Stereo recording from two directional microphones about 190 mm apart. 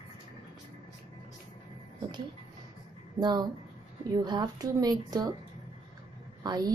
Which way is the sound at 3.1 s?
20° right (ahead or behind).